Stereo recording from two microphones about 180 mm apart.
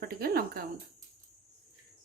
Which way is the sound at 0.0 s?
55° right (ahead or behind).